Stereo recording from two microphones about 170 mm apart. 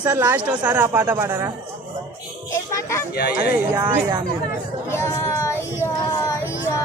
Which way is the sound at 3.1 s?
65° left (ahead or behind).